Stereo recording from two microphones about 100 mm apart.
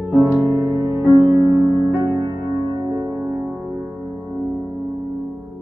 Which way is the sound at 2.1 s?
40° right (ahead or behind).